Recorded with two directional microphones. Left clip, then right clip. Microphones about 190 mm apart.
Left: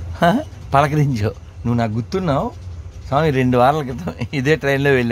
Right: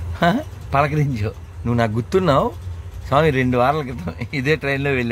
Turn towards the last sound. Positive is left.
turn(degrees=20)  # may be behind; listen again after turning